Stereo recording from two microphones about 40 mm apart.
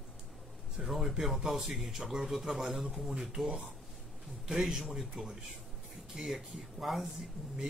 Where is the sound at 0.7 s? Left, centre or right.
Centre.